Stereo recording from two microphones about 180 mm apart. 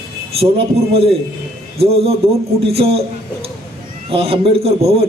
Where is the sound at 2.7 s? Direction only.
35° right (ahead or behind).